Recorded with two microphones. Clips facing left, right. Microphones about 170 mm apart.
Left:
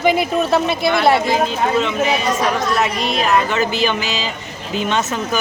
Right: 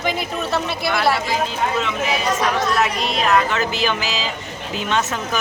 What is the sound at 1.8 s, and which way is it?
Speech, 5° right (ahead or behind).